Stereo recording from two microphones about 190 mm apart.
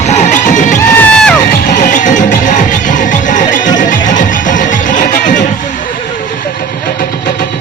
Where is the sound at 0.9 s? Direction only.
5° left (ahead or behind).